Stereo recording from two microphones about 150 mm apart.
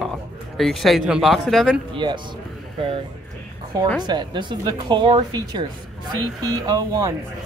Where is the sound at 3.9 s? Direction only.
30° right (ahead or behind).